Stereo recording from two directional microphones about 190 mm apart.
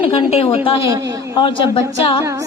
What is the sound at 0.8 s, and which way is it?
Speech, 20° right (ahead or behind).